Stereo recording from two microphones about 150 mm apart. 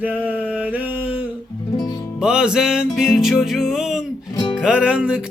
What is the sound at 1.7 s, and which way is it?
Music, 25° left (ahead or behind).